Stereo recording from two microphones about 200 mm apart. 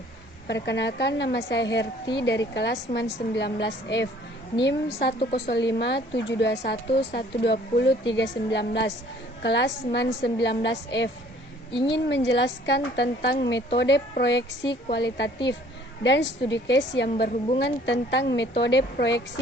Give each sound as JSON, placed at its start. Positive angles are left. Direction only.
{"t": 0.4, "sound": "a woman's voice", "side_deg": 60}
{"t": 14.6, "sound": "speech", "side_deg": 25}
{"t": 14.9, "sound": "a woman's voice", "side_deg": 60}